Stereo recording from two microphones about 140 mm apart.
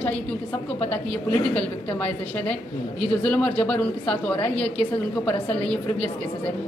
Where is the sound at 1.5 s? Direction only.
10° left (ahead or behind).